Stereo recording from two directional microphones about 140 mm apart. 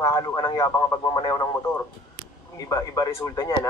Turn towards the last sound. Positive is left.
turn(degrees=25)  # may be behind; listen again after turning